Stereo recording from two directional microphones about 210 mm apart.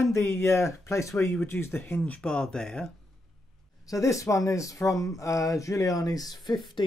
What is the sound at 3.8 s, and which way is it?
Speech, 15° left (ahead or behind).